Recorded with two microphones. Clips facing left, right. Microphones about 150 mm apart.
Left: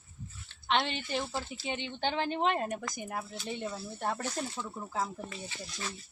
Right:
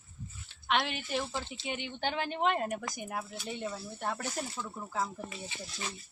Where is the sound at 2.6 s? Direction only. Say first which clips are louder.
Even; 10° right (ahead or behind).